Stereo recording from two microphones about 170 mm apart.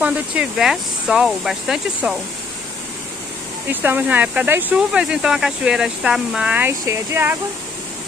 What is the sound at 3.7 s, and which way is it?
Speech, 10° right (ahead or behind).